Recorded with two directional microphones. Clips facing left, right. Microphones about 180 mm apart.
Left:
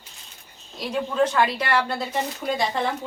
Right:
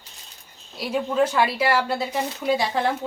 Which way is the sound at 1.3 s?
5° right (ahead or behind).